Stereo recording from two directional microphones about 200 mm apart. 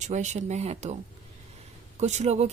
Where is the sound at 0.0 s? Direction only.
35° right (ahead or behind).